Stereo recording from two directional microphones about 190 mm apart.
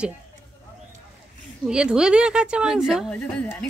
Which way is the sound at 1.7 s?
5° right (ahead or behind).